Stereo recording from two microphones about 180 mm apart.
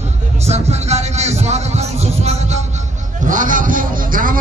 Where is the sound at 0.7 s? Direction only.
35° right (ahead or behind).